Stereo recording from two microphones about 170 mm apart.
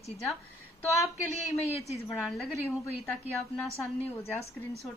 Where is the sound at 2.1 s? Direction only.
Centre (ahead or behind).